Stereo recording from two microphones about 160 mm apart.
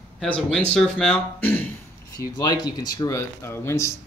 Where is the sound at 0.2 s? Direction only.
5° left (ahead or behind).